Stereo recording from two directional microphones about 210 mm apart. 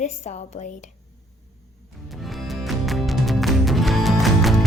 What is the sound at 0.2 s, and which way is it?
Speech, 35° left (ahead or behind).